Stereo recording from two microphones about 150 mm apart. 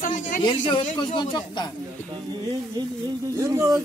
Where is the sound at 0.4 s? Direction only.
35° left (ahead or behind).